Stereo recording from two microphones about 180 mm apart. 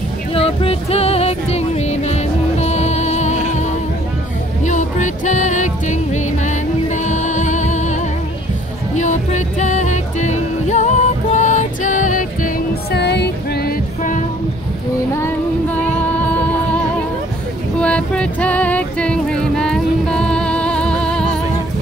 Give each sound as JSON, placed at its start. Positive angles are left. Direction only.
{"t": 0.3, "sound": "music", "side_deg": 30}
{"t": 4.6, "sound": "music", "side_deg": 45}
{"t": 12.9, "sound": "music", "side_deg": 70}
{"t": 17.7, "sound": "music", "side_deg": 5}